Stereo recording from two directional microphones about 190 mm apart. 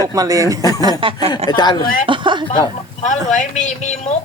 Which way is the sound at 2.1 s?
25° right (ahead or behind).